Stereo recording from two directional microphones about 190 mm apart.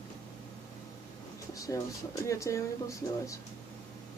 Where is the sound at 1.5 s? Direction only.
15° left (ahead or behind).